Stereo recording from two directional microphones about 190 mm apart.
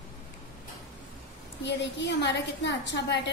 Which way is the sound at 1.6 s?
70° left (ahead or behind).